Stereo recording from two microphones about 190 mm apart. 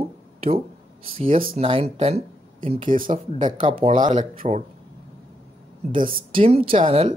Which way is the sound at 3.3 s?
25° right (ahead or behind).